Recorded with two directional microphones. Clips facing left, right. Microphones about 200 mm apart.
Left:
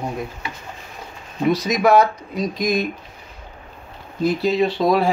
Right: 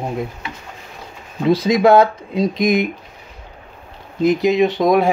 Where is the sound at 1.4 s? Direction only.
25° right (ahead or behind).